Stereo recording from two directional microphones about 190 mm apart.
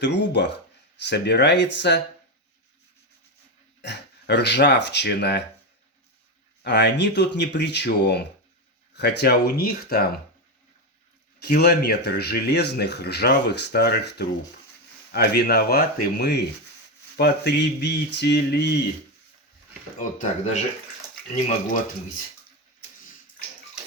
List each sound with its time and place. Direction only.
0.0 s speech: 65° left (ahead or behind)
3.8 s speech: 60° left (ahead or behind)
6.6 s speech: 60° left (ahead or behind)
11.3 s speech: 55° left (ahead or behind)
20.0 s speech: 45° left (ahead or behind)